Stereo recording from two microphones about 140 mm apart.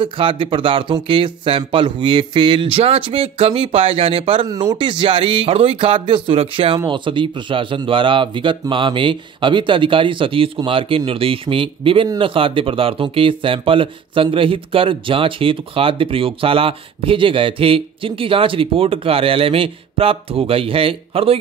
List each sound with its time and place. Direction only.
0.0 s speech: 40° right (ahead or behind)
4.5 s speech: 30° right (ahead or behind)